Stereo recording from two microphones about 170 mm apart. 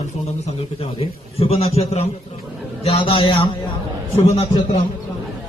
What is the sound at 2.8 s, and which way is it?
A man's voice, 35° left (ahead or behind).